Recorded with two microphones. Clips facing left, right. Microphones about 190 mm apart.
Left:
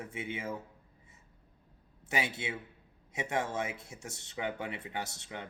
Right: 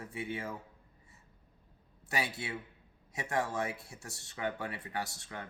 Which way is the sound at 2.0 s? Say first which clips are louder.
Left 2 dB; 20° left (ahead or behind).